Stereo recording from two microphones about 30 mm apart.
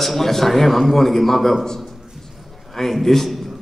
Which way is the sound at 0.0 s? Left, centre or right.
Centre.